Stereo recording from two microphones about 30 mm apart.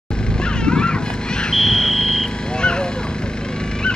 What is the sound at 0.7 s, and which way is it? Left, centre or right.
Music, left.